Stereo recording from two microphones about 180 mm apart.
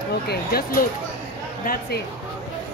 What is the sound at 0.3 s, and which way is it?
Speech, 55° left (ahead or behind).